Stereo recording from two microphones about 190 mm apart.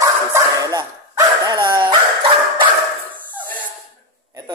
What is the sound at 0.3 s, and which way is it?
Dog, 20° right (ahead or behind).